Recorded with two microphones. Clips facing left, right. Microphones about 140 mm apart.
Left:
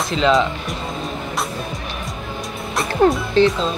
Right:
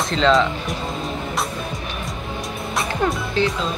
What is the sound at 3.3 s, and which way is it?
Speech, 25° left (ahead or behind).